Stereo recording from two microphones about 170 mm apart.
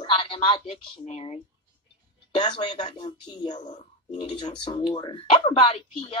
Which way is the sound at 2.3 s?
25° left (ahead or behind).